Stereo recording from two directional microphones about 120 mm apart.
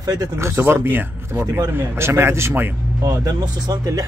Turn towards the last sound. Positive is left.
turn(degrees=-30)  # may be behind; listen again after turning